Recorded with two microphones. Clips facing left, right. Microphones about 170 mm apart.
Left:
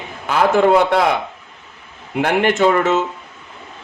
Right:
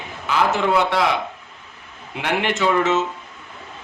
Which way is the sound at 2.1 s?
50° left (ahead or behind).